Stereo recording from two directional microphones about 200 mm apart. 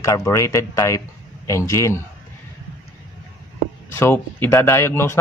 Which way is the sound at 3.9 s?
10° left (ahead or behind).